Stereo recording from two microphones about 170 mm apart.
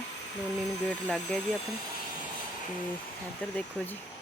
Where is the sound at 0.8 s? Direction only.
Centre (ahead or behind).